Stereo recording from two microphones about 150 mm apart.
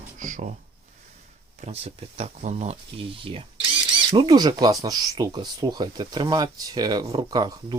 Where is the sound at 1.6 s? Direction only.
45° right (ahead or behind).